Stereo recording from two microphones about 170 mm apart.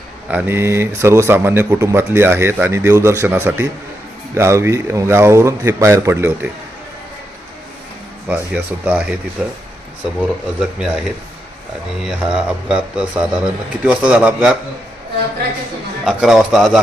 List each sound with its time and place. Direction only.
0.3 s speech: 10° right (ahead or behind)
8.3 s a man's voice: 10° right (ahead or behind)
10.6 s a man's voice: 5° right (ahead or behind)
12.0 s a man's voice: 5° right (ahead or behind)
16.0 s a man's voice: 5° right (ahead or behind)